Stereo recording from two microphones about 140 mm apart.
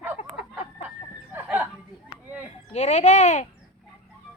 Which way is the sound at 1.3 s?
10° right (ahead or behind).